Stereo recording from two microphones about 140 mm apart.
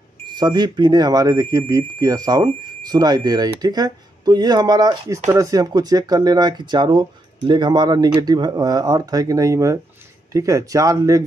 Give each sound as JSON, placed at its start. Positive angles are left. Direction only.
{"t": 0.3, "sound": "speech", "side_deg": -30}